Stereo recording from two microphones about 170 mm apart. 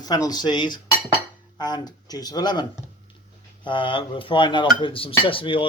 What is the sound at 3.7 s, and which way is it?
Speech, 30° left (ahead or behind).